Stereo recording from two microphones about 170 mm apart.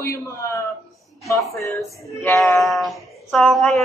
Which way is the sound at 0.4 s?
15° left (ahead or behind).